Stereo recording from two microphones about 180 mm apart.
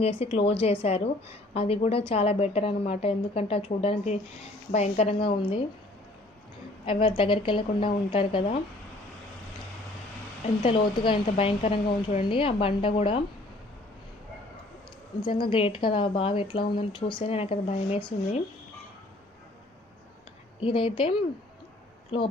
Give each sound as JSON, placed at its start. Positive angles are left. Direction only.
{"t": 0.0, "sound": "a woman's voice", "side_deg": 35}
{"t": 6.8, "sound": "a woman's voice", "side_deg": 30}
{"t": 10.4, "sound": "a woman's voice", "side_deg": 30}
{"t": 15.2, "sound": "a woman's voice", "side_deg": 25}
{"t": 20.6, "sound": "a woman's voice", "side_deg": 30}